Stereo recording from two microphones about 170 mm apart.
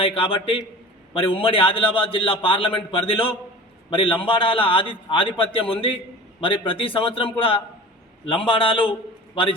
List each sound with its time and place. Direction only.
0.0 s a man's voice: 30° left (ahead or behind)